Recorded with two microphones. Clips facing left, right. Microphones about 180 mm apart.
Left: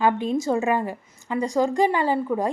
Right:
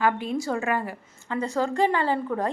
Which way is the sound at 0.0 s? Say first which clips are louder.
Left 3 dB; 20° left (ahead or behind).